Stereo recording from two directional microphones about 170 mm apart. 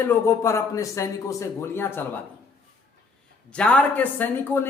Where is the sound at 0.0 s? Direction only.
15° left (ahead or behind).